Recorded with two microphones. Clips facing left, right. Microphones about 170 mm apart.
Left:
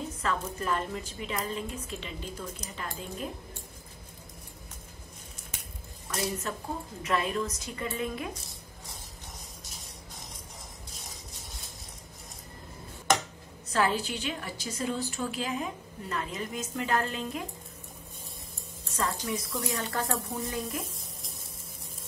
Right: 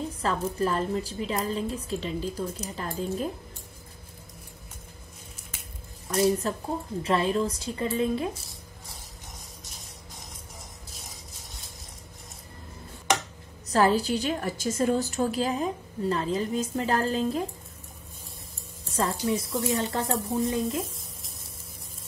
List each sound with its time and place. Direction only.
0.2 s a woman's voice: 35° right (ahead or behind)
6.0 s a woman's voice: 35° right (ahead or behind)
13.7 s a woman's voice: 35° right (ahead or behind)
18.9 s music: 35° right (ahead or behind)
19.6 s speech: 25° right (ahead or behind)